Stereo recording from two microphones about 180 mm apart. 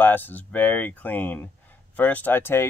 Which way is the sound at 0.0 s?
10° left (ahead or behind).